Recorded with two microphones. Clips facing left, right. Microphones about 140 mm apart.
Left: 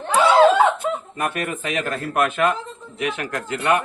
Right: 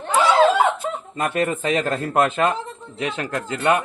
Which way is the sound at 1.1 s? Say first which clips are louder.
Right 3 dB; 25° right (ahead or behind).